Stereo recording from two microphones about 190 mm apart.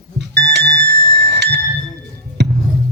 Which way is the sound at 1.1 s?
65° right (ahead or behind).